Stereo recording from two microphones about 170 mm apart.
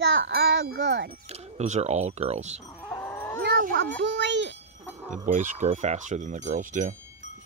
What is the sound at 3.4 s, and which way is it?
Speech, 65° right (ahead or behind).